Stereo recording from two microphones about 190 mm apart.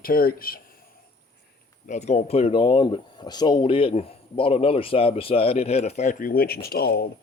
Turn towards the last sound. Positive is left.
turn(degrees=55)  # may be behind; listen again after turning